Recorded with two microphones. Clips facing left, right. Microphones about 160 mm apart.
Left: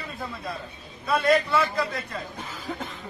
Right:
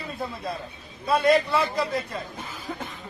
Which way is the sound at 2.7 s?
5° right (ahead or behind).